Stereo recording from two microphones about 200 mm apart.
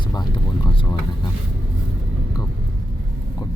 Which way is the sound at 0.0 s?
20° left (ahead or behind).